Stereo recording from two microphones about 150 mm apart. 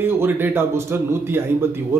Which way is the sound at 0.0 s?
15° right (ahead or behind).